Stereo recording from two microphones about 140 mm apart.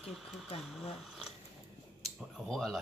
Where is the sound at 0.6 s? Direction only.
Centre (ahead or behind).